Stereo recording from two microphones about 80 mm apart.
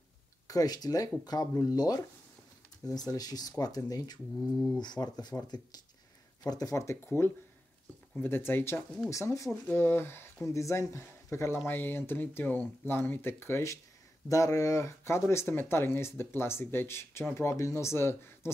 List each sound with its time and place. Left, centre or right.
0.5 s speech: left
4.6 s speech: centre
4.8 s speech: left
6.4 s speech: left
8.2 s speech: left
9.1 s speech: left
9.5 s speech: left